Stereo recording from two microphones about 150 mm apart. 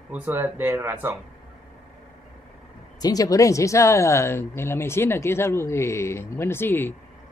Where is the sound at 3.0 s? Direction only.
25° left (ahead or behind).